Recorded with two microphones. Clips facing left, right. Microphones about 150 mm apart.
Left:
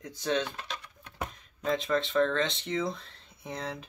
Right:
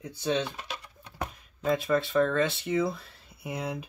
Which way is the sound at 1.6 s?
5° right (ahead or behind).